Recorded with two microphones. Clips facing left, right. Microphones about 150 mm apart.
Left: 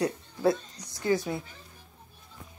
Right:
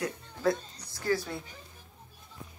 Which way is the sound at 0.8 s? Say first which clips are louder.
Left 3 dB; 20° left (ahead or behind).